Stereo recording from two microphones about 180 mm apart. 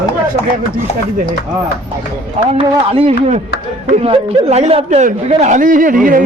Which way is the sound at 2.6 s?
35° right (ahead or behind).